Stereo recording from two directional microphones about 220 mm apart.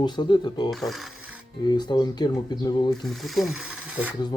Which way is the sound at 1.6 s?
20° left (ahead or behind).